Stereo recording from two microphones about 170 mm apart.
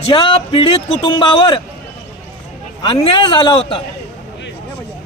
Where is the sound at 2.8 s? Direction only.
30° left (ahead or behind).